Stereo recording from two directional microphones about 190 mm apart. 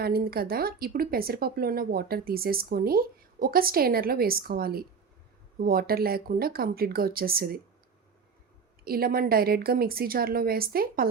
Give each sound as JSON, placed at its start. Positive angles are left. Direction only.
{"t": 0.0, "sound": "speech", "side_deg": -50}
{"t": 8.8, "sound": "speech", "side_deg": -50}